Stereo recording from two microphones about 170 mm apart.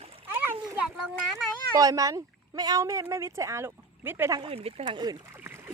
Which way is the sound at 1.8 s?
20° right (ahead or behind).